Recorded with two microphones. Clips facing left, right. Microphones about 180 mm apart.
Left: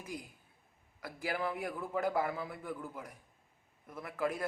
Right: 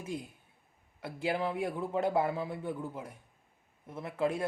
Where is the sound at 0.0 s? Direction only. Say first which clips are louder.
Right 5 dB; 25° right (ahead or behind).